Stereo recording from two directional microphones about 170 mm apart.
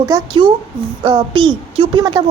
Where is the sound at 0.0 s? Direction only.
25° right (ahead or behind).